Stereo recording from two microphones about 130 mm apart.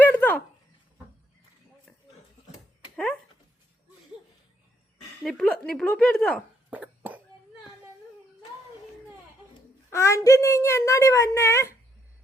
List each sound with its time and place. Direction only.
0.0 s a sound: 15° left (ahead or behind)
2.9 s dog: 10° left (ahead or behind)
5.2 s speech: 5° left (ahead or behind)
6.7 s cough: 10° right (ahead or behind)
9.9 s speech: 25° left (ahead or behind)